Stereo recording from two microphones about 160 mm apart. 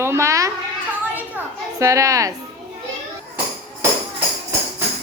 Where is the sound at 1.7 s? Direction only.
20° right (ahead or behind).